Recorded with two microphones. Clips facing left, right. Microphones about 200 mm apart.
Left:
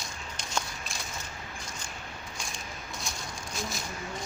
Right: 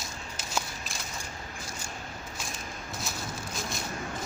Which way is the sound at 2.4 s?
5° right (ahead or behind).